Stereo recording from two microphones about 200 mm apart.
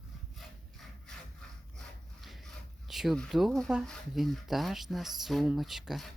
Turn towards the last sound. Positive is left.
turn(degrees=0)  # may be behind; listen again after turning